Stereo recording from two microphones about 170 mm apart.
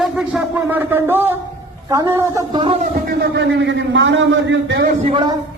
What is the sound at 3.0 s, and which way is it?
A man's voice, 90° right.